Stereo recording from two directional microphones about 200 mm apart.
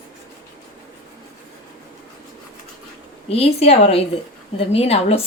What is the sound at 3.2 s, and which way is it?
A woman's voice, 30° left (ahead or behind).